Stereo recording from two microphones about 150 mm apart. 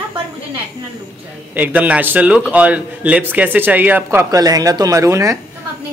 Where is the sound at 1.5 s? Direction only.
10° right (ahead or behind).